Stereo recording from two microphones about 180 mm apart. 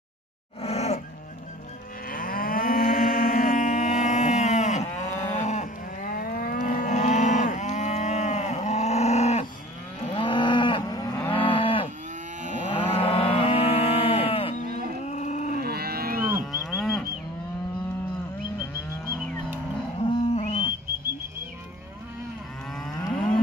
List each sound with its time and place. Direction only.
0.6 s a sound: 35° left (ahead or behind)
2.0 s moo: 50° left (ahead or behind)
10.0 s moo: 25° left (ahead or behind)
12.7 s cattle: 30° left (ahead or behind)
15.0 s a sound: 40° left (ahead or behind)
15.6 s livestock: 60° right (ahead or behind)
16.7 s moo: centre (ahead or behind)
20.0 s livestock: 35° left (ahead or behind)